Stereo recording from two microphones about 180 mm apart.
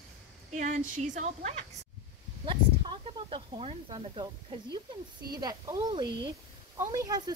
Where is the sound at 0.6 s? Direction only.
45° right (ahead or behind).